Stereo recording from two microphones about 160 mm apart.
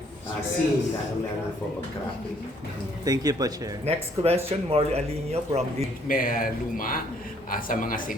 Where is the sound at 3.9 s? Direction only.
40° right (ahead or behind).